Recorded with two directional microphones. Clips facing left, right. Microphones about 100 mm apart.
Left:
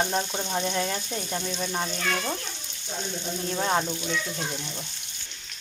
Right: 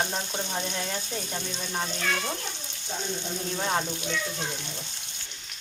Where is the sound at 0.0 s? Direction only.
5° left (ahead or behind).